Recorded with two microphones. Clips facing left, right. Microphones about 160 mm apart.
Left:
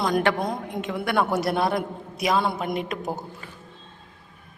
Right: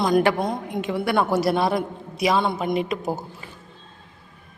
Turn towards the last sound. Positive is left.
turn(degrees=0)  # may be behind; listen again after turning